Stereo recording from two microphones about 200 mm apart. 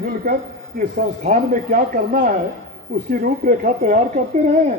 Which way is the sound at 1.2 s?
40° right (ahead or behind).